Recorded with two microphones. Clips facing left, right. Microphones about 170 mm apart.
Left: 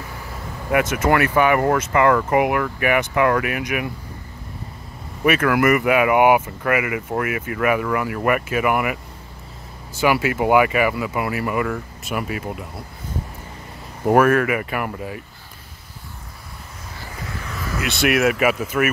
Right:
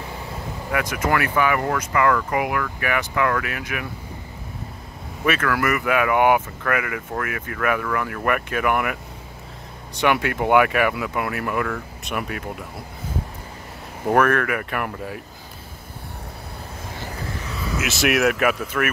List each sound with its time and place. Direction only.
0.7 s speech: 25° left (ahead or behind)
5.2 s speech: 15° left (ahead or behind)
9.9 s speech: 5° left (ahead or behind)
14.0 s speech: 10° left (ahead or behind)
17.0 s vehicle: 20° right (ahead or behind)
17.7 s speech: centre (ahead or behind)